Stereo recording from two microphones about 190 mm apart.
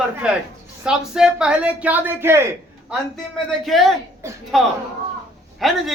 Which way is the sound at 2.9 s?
Centre (ahead or behind).